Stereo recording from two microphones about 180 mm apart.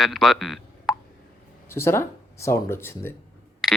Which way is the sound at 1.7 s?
15° left (ahead or behind).